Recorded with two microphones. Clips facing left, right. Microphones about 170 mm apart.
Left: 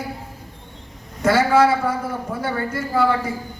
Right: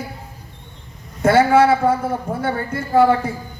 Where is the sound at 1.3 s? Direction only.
30° right (ahead or behind).